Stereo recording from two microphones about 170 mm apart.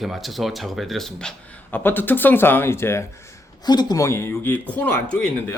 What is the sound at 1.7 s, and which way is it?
Speech, 10° left (ahead or behind).